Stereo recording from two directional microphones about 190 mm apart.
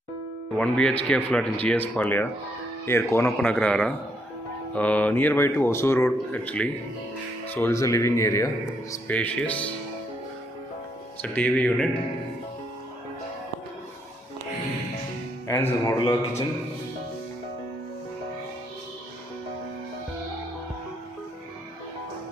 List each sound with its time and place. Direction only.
0.6 s speech: 5° left (ahead or behind)
11.3 s speech: 5° left (ahead or behind)
15.4 s speech: 15° left (ahead or behind)